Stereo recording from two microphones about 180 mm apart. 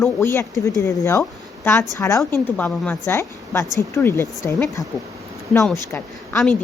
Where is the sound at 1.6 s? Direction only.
15° left (ahead or behind).